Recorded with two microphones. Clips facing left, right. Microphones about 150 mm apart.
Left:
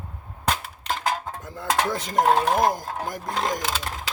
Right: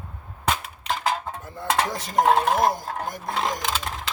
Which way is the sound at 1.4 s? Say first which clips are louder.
Even; 80° left.